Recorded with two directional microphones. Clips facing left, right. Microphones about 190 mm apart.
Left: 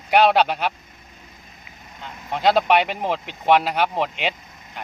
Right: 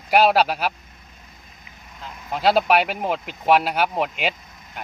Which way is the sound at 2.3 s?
5° right (ahead or behind).